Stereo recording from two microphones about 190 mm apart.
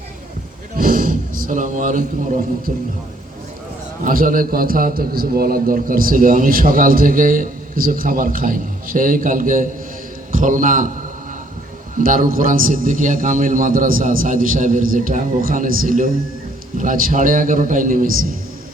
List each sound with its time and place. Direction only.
0.8 s music: 45° right (ahead or behind)
4.0 s a man's voice: 45° right (ahead or behind)
11.9 s a man's voice: 45° right (ahead or behind)